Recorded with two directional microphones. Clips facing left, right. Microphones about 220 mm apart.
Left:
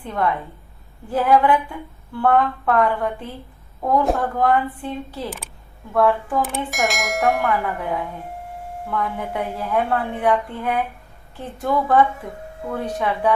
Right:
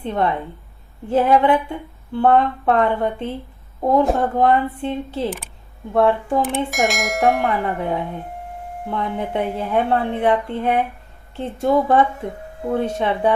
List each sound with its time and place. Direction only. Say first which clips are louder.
0.0 s speech: right 2 dB; 25° right (ahead or behind)
6.7 s bell: right 2 dB; centre (ahead or behind)
7.4 s speech: right 2 dB; 25° right (ahead or behind)